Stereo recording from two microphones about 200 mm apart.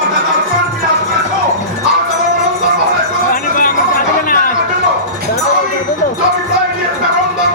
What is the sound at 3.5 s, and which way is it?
Music, 45° left (ahead or behind).